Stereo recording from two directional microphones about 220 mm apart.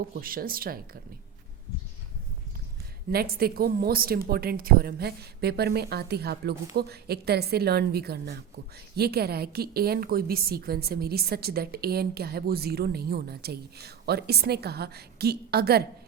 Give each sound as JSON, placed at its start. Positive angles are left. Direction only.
{"t": 0.1, "sound": "speech", "side_deg": -40}
{"t": 3.1, "sound": "a woman's voice", "side_deg": -45}